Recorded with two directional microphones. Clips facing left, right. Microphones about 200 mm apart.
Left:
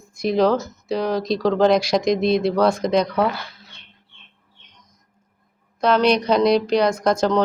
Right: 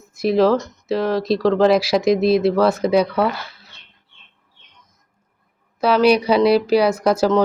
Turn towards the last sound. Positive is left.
turn(degrees=-5)  # may be behind; listen again after turning